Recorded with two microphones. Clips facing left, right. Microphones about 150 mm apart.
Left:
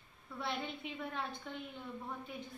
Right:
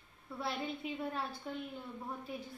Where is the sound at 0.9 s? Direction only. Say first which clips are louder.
Right 2 dB; 30° right (ahead or behind).